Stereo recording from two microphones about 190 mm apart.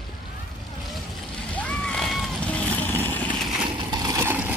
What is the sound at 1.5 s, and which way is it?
Vehicle, 5° left (ahead or behind).